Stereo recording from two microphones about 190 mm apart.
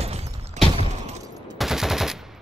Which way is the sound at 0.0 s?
35° right (ahead or behind).